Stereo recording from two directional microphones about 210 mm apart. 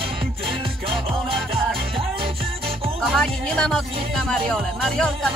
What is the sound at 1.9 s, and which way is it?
Music, 25° right (ahead or behind).